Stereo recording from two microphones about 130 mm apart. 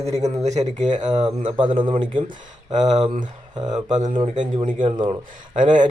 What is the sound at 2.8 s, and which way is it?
Speech, 65° right (ahead or behind).